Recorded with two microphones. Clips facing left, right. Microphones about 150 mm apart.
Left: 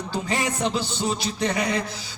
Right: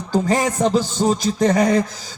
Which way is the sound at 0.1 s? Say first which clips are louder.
Right 9 dB; 45° right (ahead or behind).